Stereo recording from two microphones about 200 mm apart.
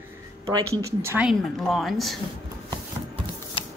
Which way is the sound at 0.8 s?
10° right (ahead or behind).